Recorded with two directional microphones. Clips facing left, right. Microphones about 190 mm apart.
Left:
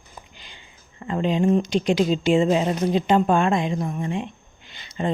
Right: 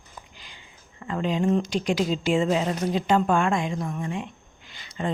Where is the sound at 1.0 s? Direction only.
20° left (ahead or behind).